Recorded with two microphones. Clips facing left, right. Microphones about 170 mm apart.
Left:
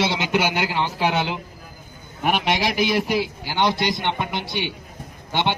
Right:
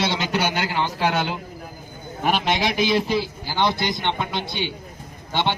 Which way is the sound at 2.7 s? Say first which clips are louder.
Even; 70° left (ahead or behind).